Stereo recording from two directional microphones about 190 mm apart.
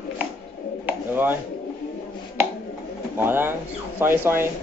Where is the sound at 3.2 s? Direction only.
10° right (ahead or behind).